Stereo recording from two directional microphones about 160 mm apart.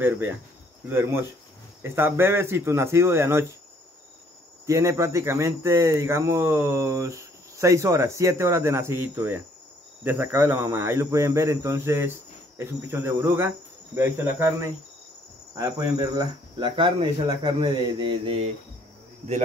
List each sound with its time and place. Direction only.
0.0 s speech: 15° right (ahead or behind)
4.6 s speech: 20° right (ahead or behind)